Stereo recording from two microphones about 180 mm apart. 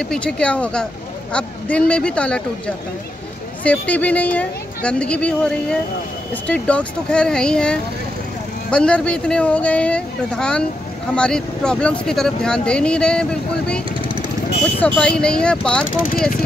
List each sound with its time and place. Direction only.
0.1 s speech: 5° left (ahead or behind)
3.6 s speech: 10° left (ahead or behind)
15.0 s speech: 5° left (ahead or behind)